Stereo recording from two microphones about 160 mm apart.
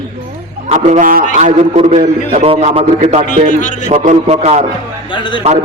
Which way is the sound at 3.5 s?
50° left (ahead or behind).